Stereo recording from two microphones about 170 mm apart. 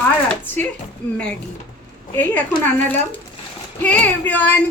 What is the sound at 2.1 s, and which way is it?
Speech, 10° left (ahead or behind).